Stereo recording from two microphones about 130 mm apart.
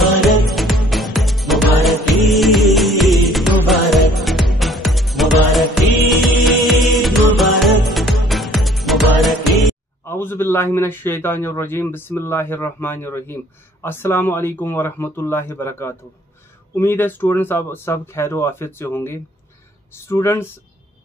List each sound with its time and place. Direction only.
0.0 s music: centre (ahead or behind)
10.0 s a man's voice: 20° left (ahead or behind)